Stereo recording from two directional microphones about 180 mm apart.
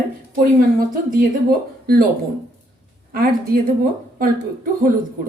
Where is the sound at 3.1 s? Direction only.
55° right (ahead or behind).